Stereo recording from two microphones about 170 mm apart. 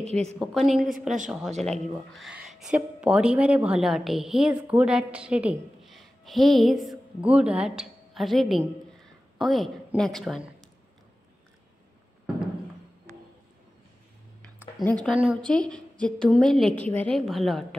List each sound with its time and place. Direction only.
0.0 s a woman's voice: 40° right (ahead or behind)
0.4 s a woman's voice: centre (ahead or behind)
15.0 s a woman's voice: 5° right (ahead or behind)
15.4 s a woman's voice: 5° left (ahead or behind)